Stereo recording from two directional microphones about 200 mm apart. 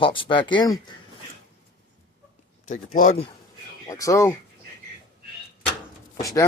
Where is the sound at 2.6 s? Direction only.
40° left (ahead or behind).